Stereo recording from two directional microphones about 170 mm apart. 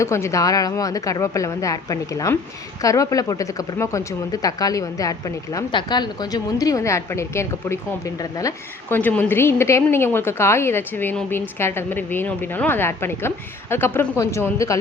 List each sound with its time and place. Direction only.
0.0 s a woman's voice: 15° left (ahead or behind)